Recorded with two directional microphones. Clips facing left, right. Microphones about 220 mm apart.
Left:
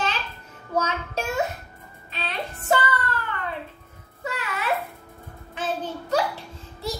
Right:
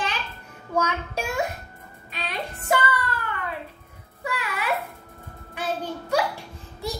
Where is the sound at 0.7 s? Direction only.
15° right (ahead or behind).